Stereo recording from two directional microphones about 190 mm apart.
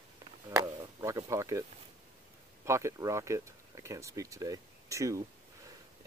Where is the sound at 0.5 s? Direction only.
15° right (ahead or behind).